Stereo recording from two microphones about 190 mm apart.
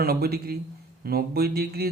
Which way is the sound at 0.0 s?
55° right (ahead or behind).